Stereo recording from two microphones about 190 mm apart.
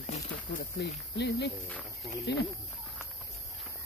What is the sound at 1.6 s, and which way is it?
Speech, 5° left (ahead or behind).